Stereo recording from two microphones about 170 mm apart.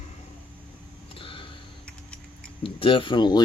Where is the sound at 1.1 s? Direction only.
30° left (ahead or behind).